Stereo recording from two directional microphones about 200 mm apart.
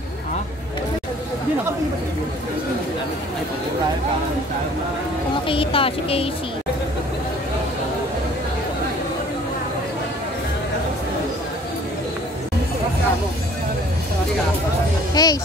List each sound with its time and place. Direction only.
5.5 s speech: 25° left (ahead or behind)
15.2 s music: 20° left (ahead or behind)